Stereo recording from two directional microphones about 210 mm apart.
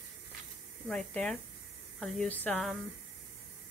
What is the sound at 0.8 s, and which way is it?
Speech, 5° left (ahead or behind).